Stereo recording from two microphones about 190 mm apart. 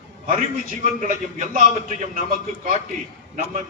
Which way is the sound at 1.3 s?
45° right (ahead or behind).